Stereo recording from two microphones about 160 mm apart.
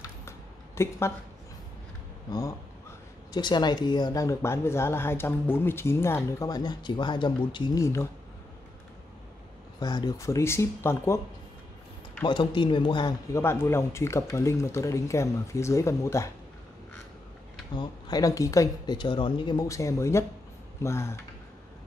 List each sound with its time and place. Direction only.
0.7 s speech: 15° left (ahead or behind)
3.3 s speech: 25° left (ahead or behind)
7.8 s speech: 15° left (ahead or behind)
9.8 s speech: 25° left (ahead or behind)
12.3 s speech: 30° left (ahead or behind)
13.4 s speech: 15° left (ahead or behind)
17.7 s speech: 25° left (ahead or behind)